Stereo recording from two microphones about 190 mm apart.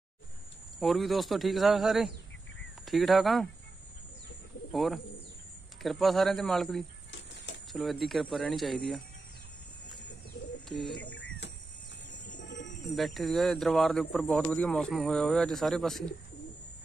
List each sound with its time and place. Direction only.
0.7 s speech: centre (ahead or behind)
4.7 s speech: centre (ahead or behind)
7.1 s a sound: 70° left (ahead or behind)
7.7 s speech: centre (ahead or behind)
10.7 s speech: centre (ahead or behind)
11.0 s a sound: 70° left (ahead or behind)
12.9 s speech: centre (ahead or behind)